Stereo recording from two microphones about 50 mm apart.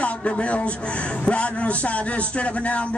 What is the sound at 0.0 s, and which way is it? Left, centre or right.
Speech, left.